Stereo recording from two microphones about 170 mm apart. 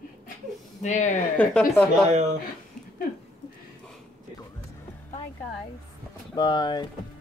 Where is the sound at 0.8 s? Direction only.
45° left (ahead or behind).